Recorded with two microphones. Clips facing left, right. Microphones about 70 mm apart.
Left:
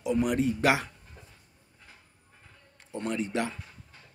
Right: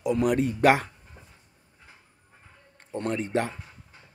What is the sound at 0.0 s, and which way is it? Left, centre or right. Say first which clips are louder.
Speech: right 3 dB; right.